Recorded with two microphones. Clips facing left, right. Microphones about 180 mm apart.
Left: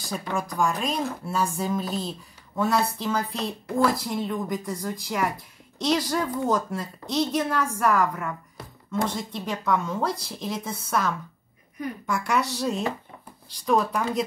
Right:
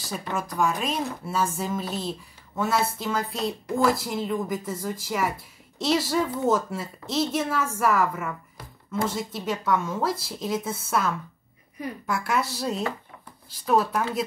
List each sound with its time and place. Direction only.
0.0 s speech: centre (ahead or behind)